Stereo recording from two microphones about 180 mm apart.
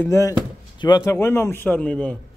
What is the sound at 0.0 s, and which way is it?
Speech, 15° left (ahead or behind).